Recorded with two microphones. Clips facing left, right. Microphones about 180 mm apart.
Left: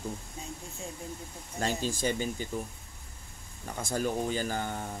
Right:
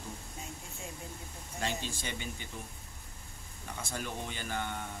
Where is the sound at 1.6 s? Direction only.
40° left (ahead or behind).